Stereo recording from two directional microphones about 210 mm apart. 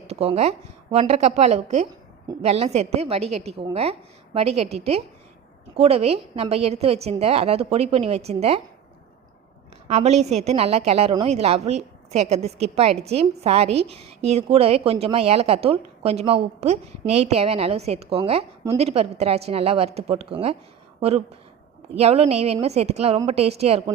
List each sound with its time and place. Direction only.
0.1 s a woman's voice: 30° right (ahead or behind)
9.9 s a woman's voice: 30° right (ahead or behind)
21.9 s a woman's voice: 30° right (ahead or behind)